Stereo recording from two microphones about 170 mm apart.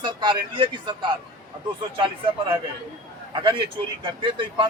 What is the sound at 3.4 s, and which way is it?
Speech, 25° right (ahead or behind).